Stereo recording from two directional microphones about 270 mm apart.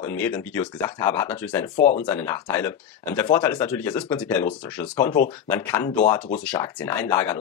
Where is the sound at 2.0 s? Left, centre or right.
Centre.